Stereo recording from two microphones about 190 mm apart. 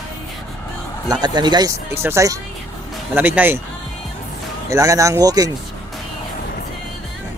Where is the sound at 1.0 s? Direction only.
20° right (ahead or behind).